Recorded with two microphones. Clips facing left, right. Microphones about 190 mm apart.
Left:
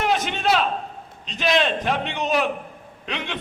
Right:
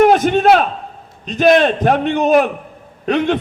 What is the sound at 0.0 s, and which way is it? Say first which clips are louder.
A man's voice: right 12 dB; 50° right (ahead or behind).